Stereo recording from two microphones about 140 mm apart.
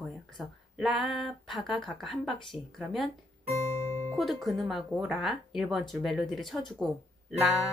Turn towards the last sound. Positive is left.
turn(degrees=0)  # may be behind; listen again after turning